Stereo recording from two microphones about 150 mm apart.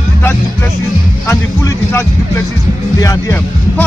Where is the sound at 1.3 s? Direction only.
15° left (ahead or behind).